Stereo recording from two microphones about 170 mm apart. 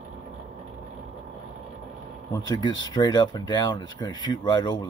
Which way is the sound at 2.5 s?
25° left (ahead or behind).